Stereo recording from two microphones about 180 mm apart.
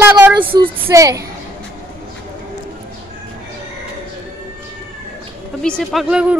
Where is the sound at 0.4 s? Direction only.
30° right (ahead or behind).